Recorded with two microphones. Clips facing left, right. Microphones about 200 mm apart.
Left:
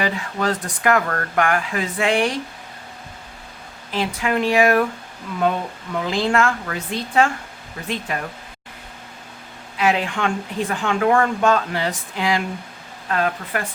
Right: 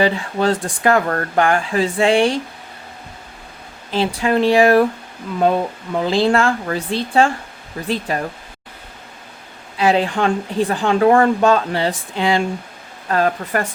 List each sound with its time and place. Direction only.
0.0 s speech: 30° right (ahead or behind)
3.9 s speech: 30° right (ahead or behind)
9.7 s speech: 30° right (ahead or behind)
13.1 s speech: 40° right (ahead or behind)